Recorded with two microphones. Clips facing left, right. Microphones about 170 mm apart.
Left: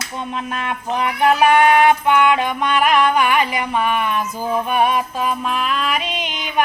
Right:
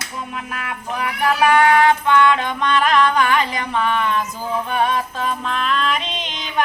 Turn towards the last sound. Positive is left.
turn(degrees=10)  # may be behind; listen again after turning